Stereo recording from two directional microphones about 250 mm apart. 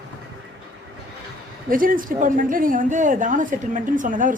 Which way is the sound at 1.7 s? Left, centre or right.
Right.